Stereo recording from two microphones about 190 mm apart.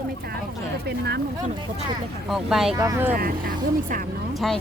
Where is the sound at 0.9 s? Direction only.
60° right (ahead or behind).